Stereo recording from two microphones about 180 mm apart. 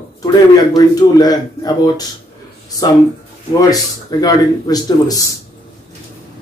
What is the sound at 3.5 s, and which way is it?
Speech, 20° left (ahead or behind).